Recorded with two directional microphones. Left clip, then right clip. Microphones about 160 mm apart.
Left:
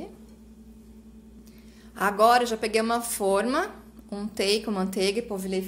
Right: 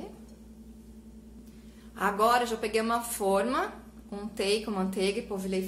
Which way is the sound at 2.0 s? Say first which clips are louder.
Left 5 dB; 45° left (ahead or behind).